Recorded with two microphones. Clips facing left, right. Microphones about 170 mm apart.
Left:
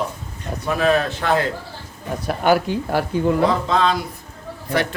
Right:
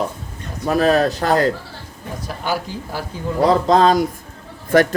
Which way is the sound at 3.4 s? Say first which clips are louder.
Right 4 dB; 40° right (ahead or behind).